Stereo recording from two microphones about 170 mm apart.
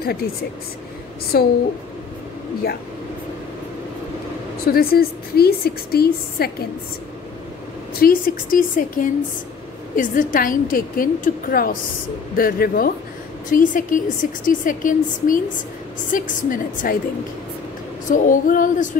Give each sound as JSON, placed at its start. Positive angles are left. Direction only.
{"t": 0.0, "sound": "a woman's voice", "side_deg": 65}
{"t": 4.6, "sound": "a woman's voice", "side_deg": 65}
{"t": 8.0, "sound": "a woman's voice", "side_deg": 55}
{"t": 18.1, "sound": "a woman's voice", "side_deg": 50}